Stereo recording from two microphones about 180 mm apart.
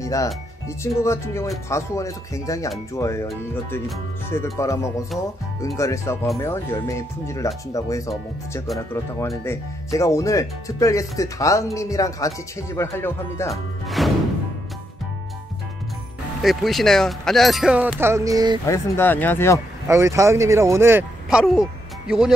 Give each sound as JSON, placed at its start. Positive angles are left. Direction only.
{"t": 0.0, "sound": "speech", "side_deg": 20}
{"t": 4.6, "sound": "speech", "side_deg": 15}
{"t": 13.5, "sound": "music", "side_deg": 0}
{"t": 16.4, "sound": "speech", "side_deg": 0}
{"t": 18.7, "sound": "speech", "side_deg": 10}
{"t": 19.9, "sound": "speech", "side_deg": -15}